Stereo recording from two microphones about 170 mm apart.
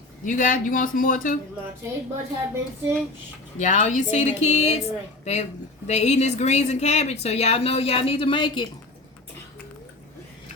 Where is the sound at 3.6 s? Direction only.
45° left (ahead or behind); by 8.6 s 30° left (ahead or behind).